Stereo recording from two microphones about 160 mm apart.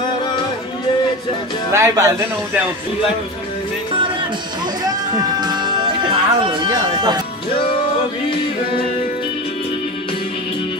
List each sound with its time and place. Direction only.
1.7 s speech: 15° right (ahead or behind)
4.8 s music: 25° right (ahead or behind)